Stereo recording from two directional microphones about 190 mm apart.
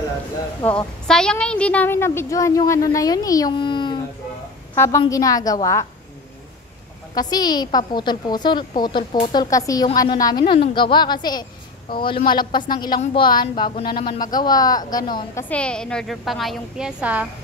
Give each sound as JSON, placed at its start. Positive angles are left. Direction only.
{"t": 0.7, "sound": "a woman's voice", "side_deg": 5}
{"t": 4.7, "sound": "a woman's voice", "side_deg": 15}
{"t": 7.2, "sound": "a woman's voice", "side_deg": 20}
{"t": 15.4, "sound": "a woman's voice", "side_deg": 5}